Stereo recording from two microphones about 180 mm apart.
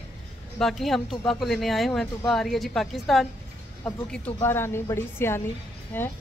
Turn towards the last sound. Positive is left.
turn(degrees=10)  # may be behind; listen again after turning